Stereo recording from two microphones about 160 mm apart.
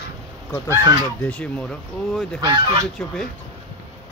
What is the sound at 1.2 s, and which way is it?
Speech, 5° left (ahead or behind).